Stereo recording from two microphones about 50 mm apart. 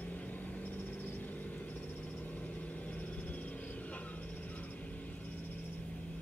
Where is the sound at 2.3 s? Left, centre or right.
Left.